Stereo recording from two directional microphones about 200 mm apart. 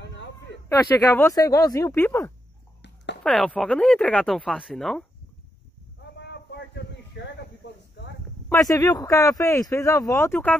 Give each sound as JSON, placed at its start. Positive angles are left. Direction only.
{"t": 0.7, "sound": "speech", "side_deg": 15}
{"t": 6.1, "sound": "a sound", "side_deg": 60}
{"t": 8.5, "sound": "speech", "side_deg": 15}